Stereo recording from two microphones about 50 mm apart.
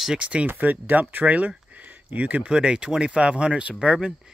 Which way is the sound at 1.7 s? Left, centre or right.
Right.